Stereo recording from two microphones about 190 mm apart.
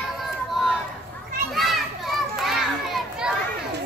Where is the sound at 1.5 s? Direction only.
Centre (ahead or behind).